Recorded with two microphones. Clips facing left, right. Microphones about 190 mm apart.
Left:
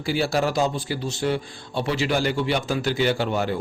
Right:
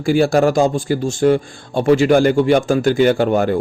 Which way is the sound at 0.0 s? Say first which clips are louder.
Right 9 dB; 50° right (ahead or behind).